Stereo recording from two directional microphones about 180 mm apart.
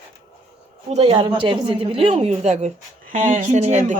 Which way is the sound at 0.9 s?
35° right (ahead or behind).